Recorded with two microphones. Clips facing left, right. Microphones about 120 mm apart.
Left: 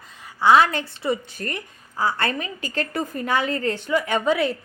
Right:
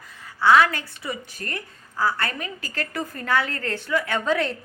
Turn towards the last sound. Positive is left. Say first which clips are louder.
# left 3 dB
turn(degrees=10)  # may be behind; listen again after turning